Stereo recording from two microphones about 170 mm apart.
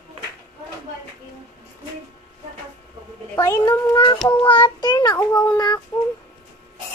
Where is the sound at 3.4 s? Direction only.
15° left (ahead or behind).